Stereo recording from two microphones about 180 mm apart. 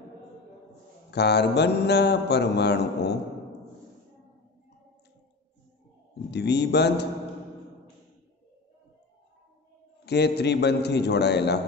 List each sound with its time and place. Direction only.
1.1 s mantra: 65° left (ahead or behind)
6.3 s mantra: 65° left (ahead or behind)
10.0 s mantra: 65° left (ahead or behind)